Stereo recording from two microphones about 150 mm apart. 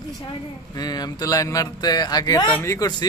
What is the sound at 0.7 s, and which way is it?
A man's voice, 25° left (ahead or behind).